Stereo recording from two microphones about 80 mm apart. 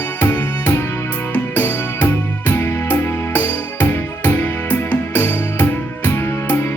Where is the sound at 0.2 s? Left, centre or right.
Left.